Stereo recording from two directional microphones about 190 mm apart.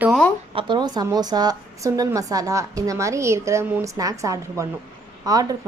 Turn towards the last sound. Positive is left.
turn(degrees=-20)  # may be behind; listen again after turning